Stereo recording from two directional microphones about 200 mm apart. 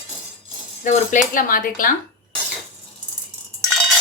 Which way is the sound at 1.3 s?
45° left (ahead or behind).